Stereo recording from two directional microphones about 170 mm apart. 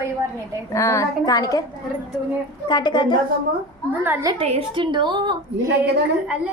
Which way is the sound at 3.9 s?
10° right (ahead or behind).